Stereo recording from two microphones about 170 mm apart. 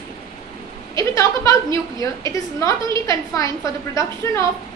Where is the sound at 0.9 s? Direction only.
20° left (ahead or behind).